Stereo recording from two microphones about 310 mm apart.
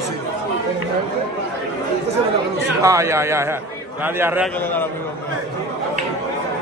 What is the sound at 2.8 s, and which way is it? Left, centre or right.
A man's voice, centre.